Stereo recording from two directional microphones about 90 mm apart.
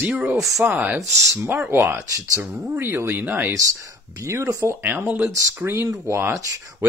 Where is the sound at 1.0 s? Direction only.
35° right (ahead or behind).